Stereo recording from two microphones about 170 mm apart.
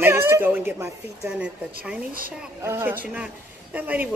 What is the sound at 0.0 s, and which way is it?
Cat, 15° right (ahead or behind).